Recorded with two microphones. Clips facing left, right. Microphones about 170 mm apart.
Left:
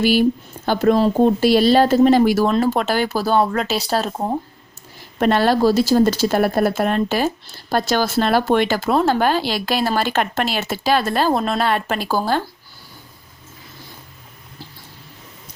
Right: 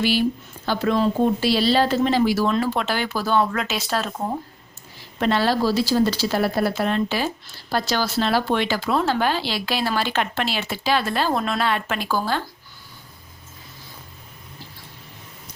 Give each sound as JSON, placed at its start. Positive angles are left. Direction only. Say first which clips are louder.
{"t": 0.0, "sound": "speech", "louder": "left 5 dB", "side_deg": 45}
{"t": 0.9, "sound": "speech", "louder": "left 4 dB", "side_deg": 35}
{"t": 5.2, "sound": "speech", "louder": "left 5 dB", "side_deg": 50}